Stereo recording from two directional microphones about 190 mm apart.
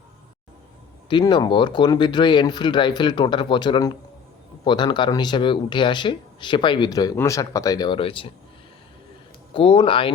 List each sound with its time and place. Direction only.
1.1 s speech: 20° left (ahead or behind)
9.5 s speech: 25° left (ahead or behind)